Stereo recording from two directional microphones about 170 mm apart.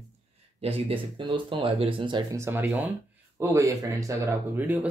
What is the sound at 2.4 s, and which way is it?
Speech, 10° right (ahead or behind).